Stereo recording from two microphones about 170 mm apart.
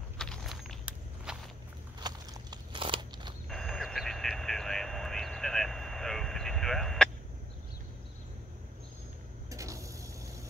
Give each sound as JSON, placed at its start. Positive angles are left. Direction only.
{"t": 0.2, "sound": "walk", "side_deg": 0}
{"t": 2.0, "sound": "crackle", "side_deg": -25}
{"t": 3.4, "sound": "vehicle", "side_deg": 0}
{"t": 9.5, "sound": "vehicle", "side_deg": -20}